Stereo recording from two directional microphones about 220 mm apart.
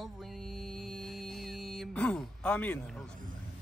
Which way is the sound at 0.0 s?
Centre (ahead or behind).